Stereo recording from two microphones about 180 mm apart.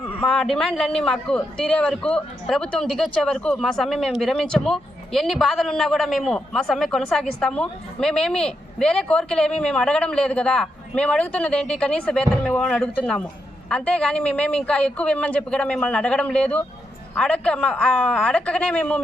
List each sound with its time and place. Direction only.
0.2 s a man's voice: 5° left (ahead or behind)